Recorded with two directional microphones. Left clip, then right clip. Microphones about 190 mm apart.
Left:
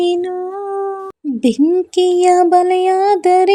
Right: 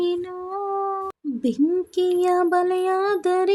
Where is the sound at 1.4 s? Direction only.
20° left (ahead or behind).